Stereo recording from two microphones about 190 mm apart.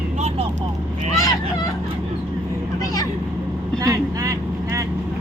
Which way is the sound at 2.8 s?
20° left (ahead or behind).